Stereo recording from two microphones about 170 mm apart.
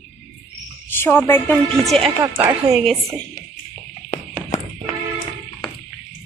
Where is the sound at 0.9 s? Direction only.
15° left (ahead or behind).